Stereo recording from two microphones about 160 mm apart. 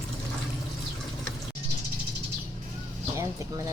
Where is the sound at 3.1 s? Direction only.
20° right (ahead or behind).